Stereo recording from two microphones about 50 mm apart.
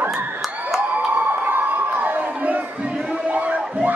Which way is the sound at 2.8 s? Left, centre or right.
Right.